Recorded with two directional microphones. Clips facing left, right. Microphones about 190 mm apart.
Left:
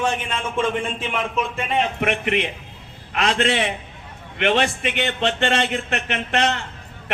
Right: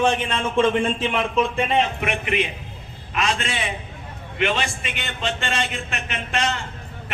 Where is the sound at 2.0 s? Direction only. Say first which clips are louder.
Left 2 dB; 60° left (ahead or behind).